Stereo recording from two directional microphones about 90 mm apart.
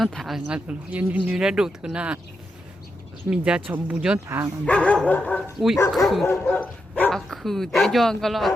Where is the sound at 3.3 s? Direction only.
10° right (ahead or behind).